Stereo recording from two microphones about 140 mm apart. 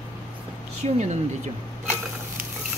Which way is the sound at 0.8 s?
45° right (ahead or behind).